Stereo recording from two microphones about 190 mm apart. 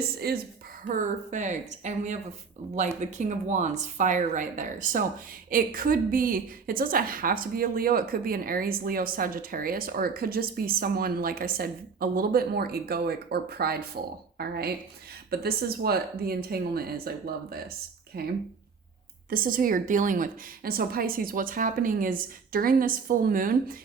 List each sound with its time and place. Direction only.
0.2 s a woman's voice: 55° right (ahead or behind)
0.9 s a woman's voice: 40° right (ahead or behind)
18.1 s a woman's voice: 55° right (ahead or behind)